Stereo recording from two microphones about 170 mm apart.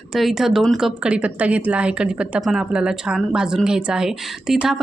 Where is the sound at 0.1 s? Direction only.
Centre (ahead or behind).